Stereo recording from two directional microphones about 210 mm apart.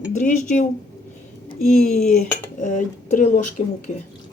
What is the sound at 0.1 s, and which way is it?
Speech, 35° left (ahead or behind).